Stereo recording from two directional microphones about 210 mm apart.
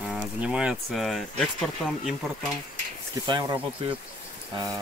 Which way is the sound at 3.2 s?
20° right (ahead or behind).